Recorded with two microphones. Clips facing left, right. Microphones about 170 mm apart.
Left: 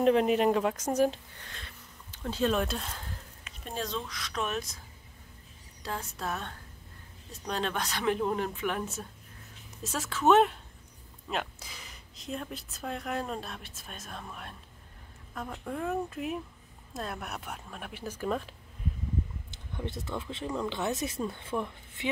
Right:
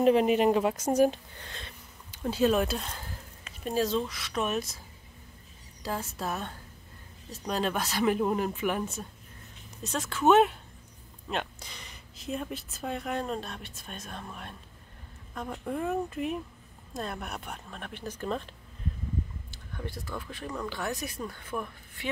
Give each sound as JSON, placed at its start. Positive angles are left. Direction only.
{"t": 0.0, "sound": "speech", "side_deg": -5}
{"t": 5.8, "sound": "speech", "side_deg": -5}
{"t": 19.5, "sound": "speech", "side_deg": 20}